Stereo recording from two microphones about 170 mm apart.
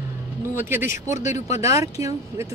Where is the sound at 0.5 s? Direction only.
15° right (ahead or behind).